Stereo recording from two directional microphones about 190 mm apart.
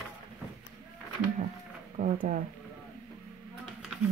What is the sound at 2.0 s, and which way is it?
Speech, 40° right (ahead or behind).